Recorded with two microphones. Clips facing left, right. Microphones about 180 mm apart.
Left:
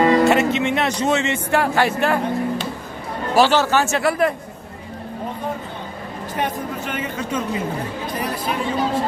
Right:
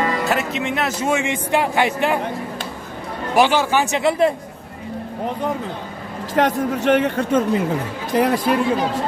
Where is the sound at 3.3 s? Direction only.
15° right (ahead or behind).